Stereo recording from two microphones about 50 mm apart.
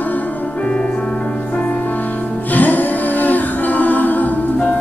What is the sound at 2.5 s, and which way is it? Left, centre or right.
Music, left.